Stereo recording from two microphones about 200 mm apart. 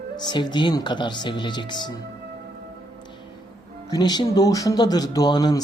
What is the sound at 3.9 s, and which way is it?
A woman's voice, 20° left (ahead or behind).